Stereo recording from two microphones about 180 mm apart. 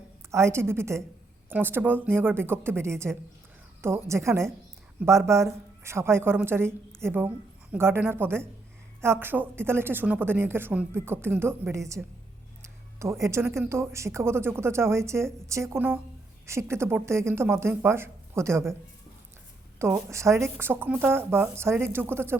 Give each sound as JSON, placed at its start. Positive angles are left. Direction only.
{"t": 0.3, "sound": "a woman's voice", "side_deg": -15}
{"t": 12.6, "sound": "music", "side_deg": -15}
{"t": 13.7, "sound": "a woman's voice", "side_deg": -15}
{"t": 19.8, "sound": "a woman's voice", "side_deg": -15}